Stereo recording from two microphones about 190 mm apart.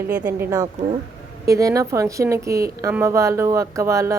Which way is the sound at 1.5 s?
15° right (ahead or behind).